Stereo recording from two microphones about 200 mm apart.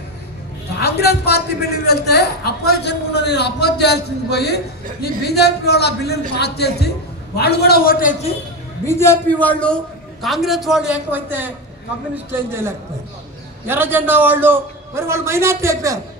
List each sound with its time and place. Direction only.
0.7 s a woman's voice: 55° left (ahead or behind)
8.8 s a man's voice: 15° left (ahead or behind); by 16.0 s 15° right (ahead or behind)